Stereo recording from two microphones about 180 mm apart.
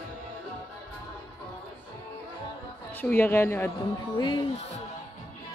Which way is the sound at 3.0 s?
10° left (ahead or behind).